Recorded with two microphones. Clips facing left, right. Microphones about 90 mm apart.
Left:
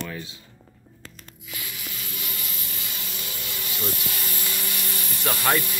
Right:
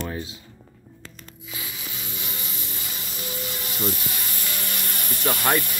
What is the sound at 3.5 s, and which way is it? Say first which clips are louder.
Rub: right 3 dB; 40° right (ahead or behind).